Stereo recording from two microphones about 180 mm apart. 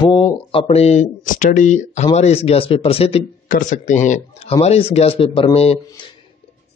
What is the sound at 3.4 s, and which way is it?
Speech, 45° left (ahead or behind).